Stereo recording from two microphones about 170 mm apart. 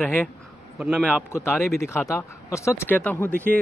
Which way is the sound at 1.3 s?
15° left (ahead or behind).